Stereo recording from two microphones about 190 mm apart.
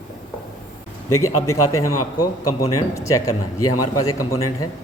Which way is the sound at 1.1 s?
15° left (ahead or behind).